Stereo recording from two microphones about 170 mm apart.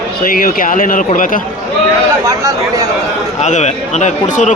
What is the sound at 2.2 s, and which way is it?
Speech, 20° right (ahead or behind).